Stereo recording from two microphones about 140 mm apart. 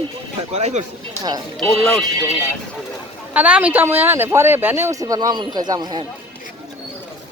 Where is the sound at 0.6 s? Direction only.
55° right (ahead or behind).